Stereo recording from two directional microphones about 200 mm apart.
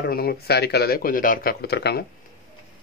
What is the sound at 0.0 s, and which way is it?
Speech, 50° left (ahead or behind).